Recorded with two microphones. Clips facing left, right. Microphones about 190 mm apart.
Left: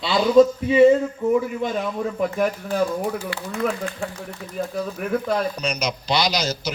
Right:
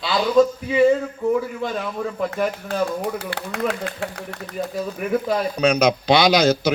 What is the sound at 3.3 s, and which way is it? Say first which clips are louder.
Speech: right 1 dB; 90° right.